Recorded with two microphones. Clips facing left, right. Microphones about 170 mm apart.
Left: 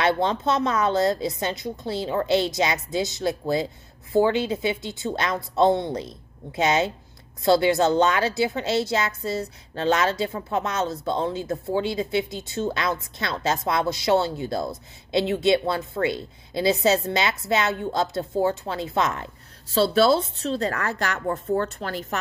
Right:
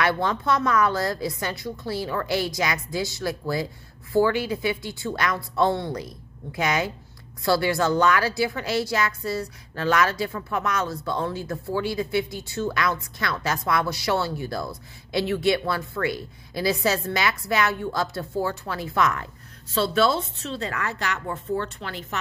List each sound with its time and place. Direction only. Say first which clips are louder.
0.0 s a woman's voice: left 2 dB; 25° left (ahead or behind); by 22.2 s 45° left (ahead or behind)